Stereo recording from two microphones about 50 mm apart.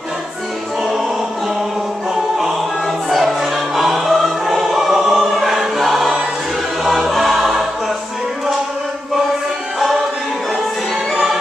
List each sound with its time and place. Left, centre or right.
2.1 s music: centre
6.8 s choir: centre